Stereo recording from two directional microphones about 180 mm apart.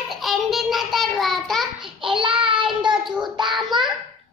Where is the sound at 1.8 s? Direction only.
25° right (ahead or behind).